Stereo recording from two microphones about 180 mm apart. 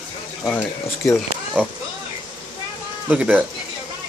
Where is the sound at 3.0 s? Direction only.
5° right (ahead or behind).